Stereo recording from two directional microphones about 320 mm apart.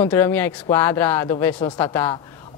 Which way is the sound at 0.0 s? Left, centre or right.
Centre.